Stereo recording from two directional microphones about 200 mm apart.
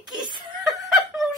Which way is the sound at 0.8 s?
Centre (ahead or behind).